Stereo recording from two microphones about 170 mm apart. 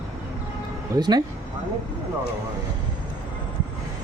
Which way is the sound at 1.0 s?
25° right (ahead or behind).